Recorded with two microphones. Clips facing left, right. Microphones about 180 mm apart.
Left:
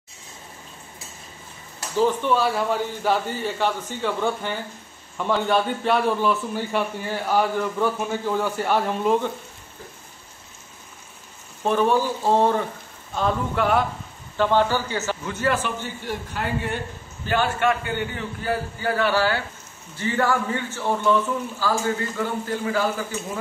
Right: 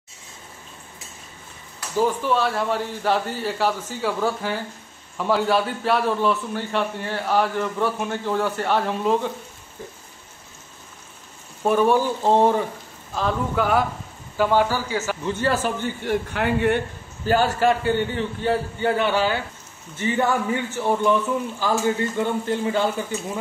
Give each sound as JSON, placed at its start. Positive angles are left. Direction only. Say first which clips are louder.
{"t": 2.0, "sound": "speech", "louder": "left 1 dB", "side_deg": -10}
{"t": 2.3, "sound": "a man's voice", "louder": "left 1 dB", "side_deg": 0}
{"t": 11.6, "sound": "speech", "louder": "right 2 dB", "side_deg": -10}
{"t": 13.1, "sound": "a man's voice", "louder": "even", "side_deg": 0}
{"t": 15.2, "sound": "a man's voice", "louder": "right 2 dB", "side_deg": -30}
{"t": 16.1, "sound": "a man's voice", "louder": "right 5 dB", "side_deg": -65}
{"t": 17.3, "sound": "a man's voice", "louder": "right 3 dB", "side_deg": -40}